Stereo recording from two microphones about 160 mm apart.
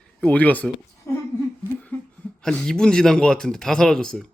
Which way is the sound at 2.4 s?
5° left (ahead or behind).